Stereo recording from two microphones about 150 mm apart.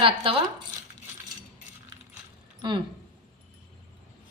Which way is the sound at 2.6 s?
30° right (ahead or behind).